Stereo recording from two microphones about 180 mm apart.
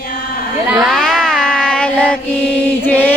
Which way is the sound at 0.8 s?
Centre (ahead or behind).